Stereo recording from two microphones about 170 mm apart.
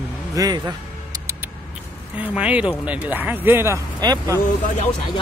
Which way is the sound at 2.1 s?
5° right (ahead or behind).